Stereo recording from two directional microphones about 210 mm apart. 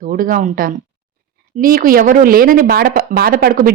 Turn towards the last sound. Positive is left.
turn(degrees=-45)  # may be behind; listen again after turning